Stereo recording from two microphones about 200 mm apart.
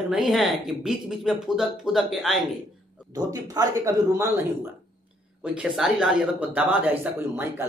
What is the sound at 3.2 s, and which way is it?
Speech, 15° right (ahead or behind).